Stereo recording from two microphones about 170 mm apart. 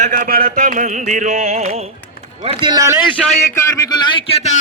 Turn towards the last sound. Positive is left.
turn(degrees=35)  # may be behind; listen again after turning